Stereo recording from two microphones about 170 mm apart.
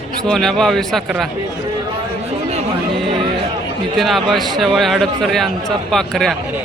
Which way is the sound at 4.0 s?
Centre (ahead or behind).